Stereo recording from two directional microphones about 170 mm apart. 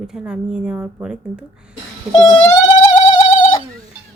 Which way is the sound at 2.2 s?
20° left (ahead or behind).